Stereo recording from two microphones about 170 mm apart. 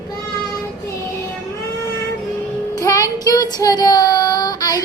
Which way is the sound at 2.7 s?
20° left (ahead or behind).